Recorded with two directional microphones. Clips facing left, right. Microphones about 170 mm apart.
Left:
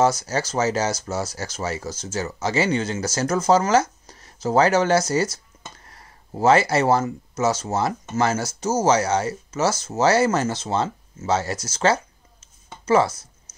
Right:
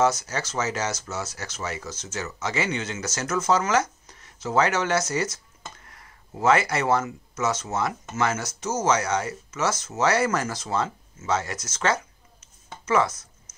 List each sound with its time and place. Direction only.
0.0 s speech: 35° left (ahead or behind)